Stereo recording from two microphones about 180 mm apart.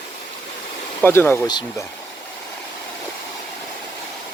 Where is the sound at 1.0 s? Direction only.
10° left (ahead or behind).